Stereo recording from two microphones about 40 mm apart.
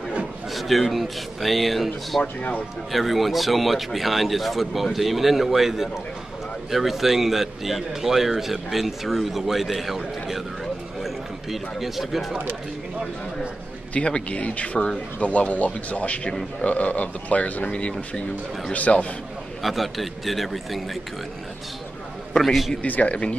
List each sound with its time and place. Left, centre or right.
0.5 s a man's voice: centre
10.6 s a sound: centre
13.9 s speech: left
19.6 s a man's voice: centre
22.4 s a man's voice: centre
22.8 s speech: left